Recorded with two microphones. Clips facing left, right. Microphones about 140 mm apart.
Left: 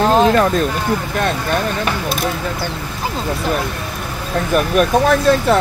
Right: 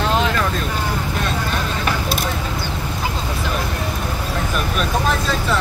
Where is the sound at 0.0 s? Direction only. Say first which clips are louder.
Left 7 dB; 40° left (ahead or behind).